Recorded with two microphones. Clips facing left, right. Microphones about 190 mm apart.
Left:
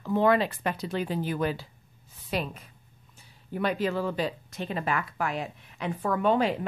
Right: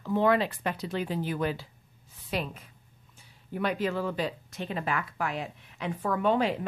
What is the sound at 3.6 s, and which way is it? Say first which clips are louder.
Speech: left 2 dB; 35° left (ahead or behind).